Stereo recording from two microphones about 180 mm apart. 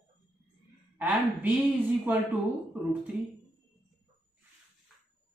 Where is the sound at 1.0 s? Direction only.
10° right (ahead or behind).